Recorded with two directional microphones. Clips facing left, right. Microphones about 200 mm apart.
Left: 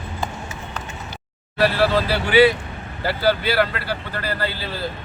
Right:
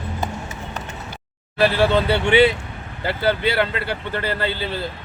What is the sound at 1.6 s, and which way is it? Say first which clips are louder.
Speech: right 1 dB; 25° right (ahead or behind).